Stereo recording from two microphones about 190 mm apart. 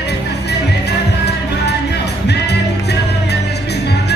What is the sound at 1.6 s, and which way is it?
Music, 60° left (ahead or behind).